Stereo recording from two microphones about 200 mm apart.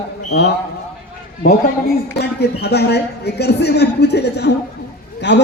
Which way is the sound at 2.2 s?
55° left (ahead or behind).